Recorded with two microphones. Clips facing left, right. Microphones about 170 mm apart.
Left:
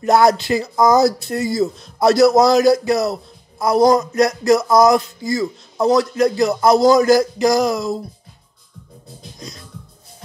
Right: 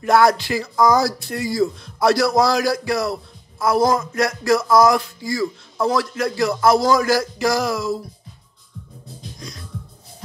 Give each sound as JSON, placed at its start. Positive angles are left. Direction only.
{"t": 0.0, "sound": "speech", "side_deg": 20}